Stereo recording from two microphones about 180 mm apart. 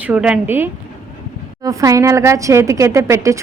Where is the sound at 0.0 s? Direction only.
5° right (ahead or behind).